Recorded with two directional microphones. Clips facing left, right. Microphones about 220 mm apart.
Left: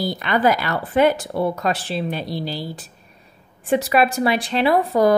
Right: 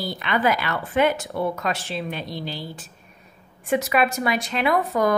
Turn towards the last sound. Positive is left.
turn(degrees=30)  # may be behind; listen again after turning